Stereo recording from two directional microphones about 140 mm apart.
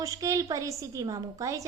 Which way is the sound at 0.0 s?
25° right (ahead or behind).